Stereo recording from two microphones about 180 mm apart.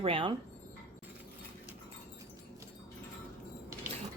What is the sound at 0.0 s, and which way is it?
Speech, 30° right (ahead or behind).